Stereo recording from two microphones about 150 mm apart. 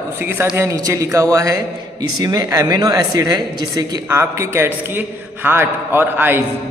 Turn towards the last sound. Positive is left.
turn(degrees=-15)  # may be behind; listen again after turning